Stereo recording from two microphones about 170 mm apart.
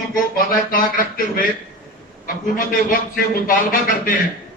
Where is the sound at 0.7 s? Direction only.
55° left (ahead or behind).